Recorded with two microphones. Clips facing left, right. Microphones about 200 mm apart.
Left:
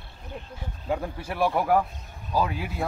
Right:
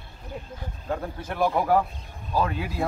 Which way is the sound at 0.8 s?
10° left (ahead or behind).